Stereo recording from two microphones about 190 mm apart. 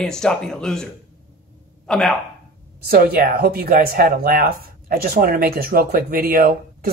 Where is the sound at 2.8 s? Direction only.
55° right (ahead or behind).